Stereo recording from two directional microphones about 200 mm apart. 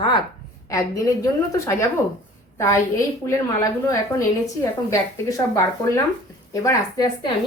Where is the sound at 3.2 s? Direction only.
15° left (ahead or behind).